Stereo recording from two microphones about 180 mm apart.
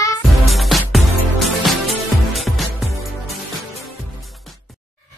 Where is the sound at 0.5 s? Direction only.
Centre (ahead or behind).